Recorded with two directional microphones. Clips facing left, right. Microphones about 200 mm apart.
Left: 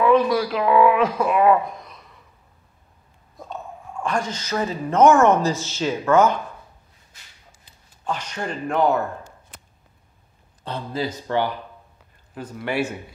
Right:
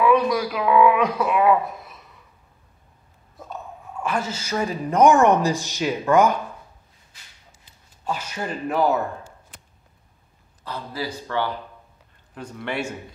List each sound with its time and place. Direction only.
0.3 s speech: centre (ahead or behind)
4.0 s speech: 5° right (ahead or behind)
8.0 s speech: 10° right (ahead or behind)
10.6 s speech: 25° left (ahead or behind)
12.4 s speech: 5° left (ahead or behind)